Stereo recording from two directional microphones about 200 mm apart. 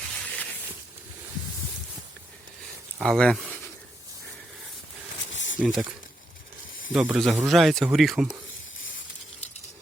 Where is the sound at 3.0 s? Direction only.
5° left (ahead or behind).